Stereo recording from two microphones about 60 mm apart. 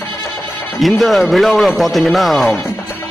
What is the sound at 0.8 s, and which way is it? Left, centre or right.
A man's voice, centre.